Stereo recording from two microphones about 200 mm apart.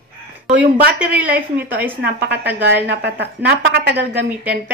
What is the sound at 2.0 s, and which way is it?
A woman's voice, 55° right (ahead or behind).